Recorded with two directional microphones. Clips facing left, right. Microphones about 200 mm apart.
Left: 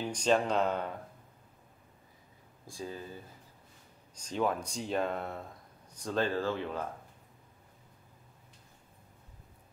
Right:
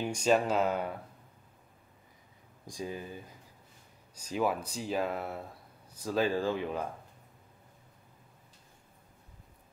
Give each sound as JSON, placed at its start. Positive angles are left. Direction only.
{"t": 0.0, "sound": "speech", "side_deg": -10}
{"t": 2.6, "sound": "speech", "side_deg": -15}